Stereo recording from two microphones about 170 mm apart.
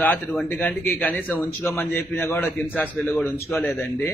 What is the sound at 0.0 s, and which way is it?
A man's voice, 10° left (ahead or behind).